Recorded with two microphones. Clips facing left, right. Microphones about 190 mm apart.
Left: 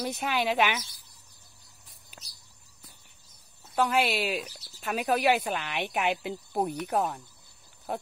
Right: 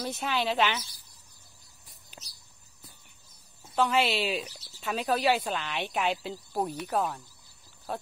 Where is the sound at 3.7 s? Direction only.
15° left (ahead or behind).